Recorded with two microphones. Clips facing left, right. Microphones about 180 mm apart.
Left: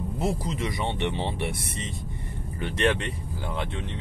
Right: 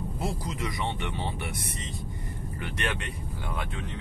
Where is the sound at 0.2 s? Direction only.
25° left (ahead or behind).